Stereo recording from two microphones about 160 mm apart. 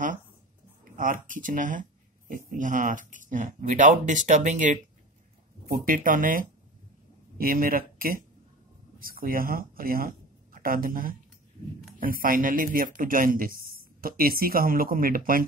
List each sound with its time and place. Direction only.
0.9 s speech: 55° right (ahead or behind)